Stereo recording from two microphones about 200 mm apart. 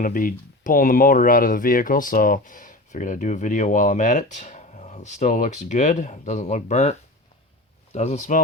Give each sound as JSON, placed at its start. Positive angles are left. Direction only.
{"t": 0.0, "sound": "speech", "side_deg": 45}
{"t": 7.9, "sound": "speech", "side_deg": 35}